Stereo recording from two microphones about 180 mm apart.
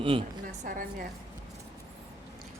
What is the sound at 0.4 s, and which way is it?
Speech, 50° right (ahead or behind).